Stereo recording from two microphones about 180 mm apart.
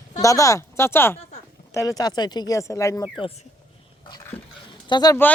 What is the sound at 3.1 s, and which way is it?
Speech, 30° left (ahead or behind).